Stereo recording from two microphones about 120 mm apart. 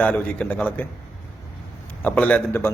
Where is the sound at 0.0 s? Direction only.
15° left (ahead or behind).